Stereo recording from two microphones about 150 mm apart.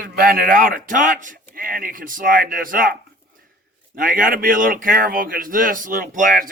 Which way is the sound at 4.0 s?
65° right (ahead or behind).